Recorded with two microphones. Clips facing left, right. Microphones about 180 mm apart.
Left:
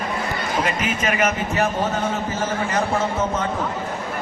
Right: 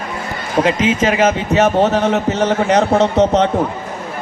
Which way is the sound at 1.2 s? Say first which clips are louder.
Right 7 dB; 85° right.